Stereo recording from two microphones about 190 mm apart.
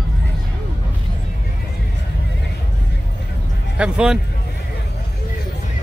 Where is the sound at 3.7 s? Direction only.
5° right (ahead or behind).